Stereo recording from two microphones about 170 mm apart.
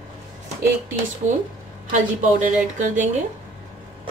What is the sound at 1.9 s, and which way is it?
Speech, 45° right (ahead or behind).